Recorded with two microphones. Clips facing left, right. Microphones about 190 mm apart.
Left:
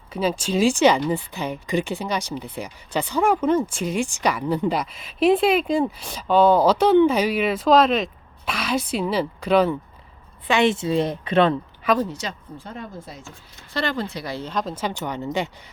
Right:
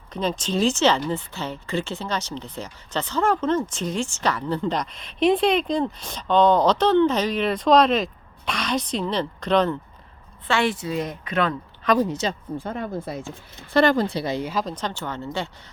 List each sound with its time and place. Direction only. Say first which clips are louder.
0.1 s speech: left 2 dB; 10° left (ahead or behind)
10.4 s a woman's voice: left 4 dB; 20° left (ahead or behind)
11.9 s speech: right 3 dB; 20° right (ahead or behind)
12.5 s speech: right 7 dB; 60° right (ahead or behind)
13.7 s speech: right 7 dB; 45° right (ahead or behind)
14.3 s speech: right 2 dB; 10° right (ahead or behind)
14.6 s speech: left 2 dB; 5° left (ahead or behind)